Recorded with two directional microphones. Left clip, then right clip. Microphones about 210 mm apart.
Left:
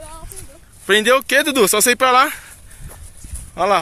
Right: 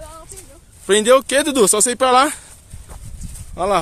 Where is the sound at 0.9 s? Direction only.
10° right (ahead or behind).